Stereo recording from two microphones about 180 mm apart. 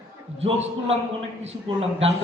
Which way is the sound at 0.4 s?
35° right (ahead or behind).